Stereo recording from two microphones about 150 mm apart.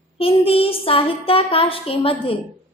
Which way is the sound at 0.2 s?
40° left (ahead or behind).